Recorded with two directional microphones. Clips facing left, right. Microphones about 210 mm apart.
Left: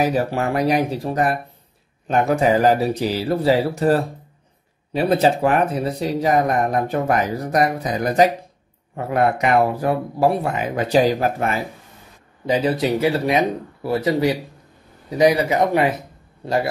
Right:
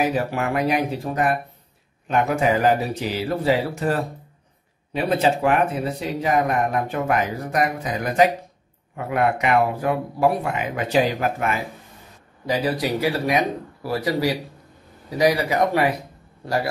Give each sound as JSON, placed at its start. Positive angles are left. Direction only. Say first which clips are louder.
{"t": 0.0, "sound": "speech", "louder": "left 3 dB", "side_deg": 35}
{"t": 12.4, "sound": "speech", "louder": "left 4 dB", "side_deg": 25}